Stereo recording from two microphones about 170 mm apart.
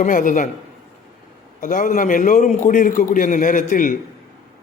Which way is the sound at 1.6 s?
50° left (ahead or behind).